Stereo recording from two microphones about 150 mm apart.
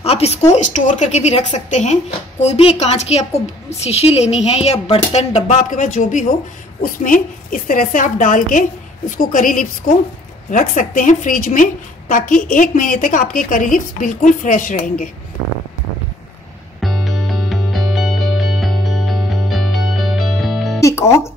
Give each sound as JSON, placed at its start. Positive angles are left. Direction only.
{"t": 0.0, "sound": "speech", "side_deg": 45}
{"t": 0.5, "sound": "a woman's voice", "side_deg": 55}
{"t": 16.8, "sound": "music", "side_deg": 0}
{"t": 20.8, "sound": "music", "side_deg": 20}